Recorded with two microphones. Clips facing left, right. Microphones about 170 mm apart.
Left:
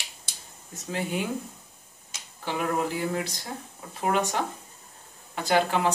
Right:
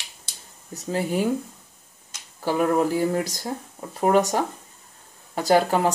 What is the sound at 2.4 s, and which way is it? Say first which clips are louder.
Speech: right 7 dB; 40° right (ahead or behind).